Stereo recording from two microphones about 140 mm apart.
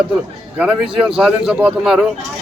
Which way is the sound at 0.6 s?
5° right (ahead or behind).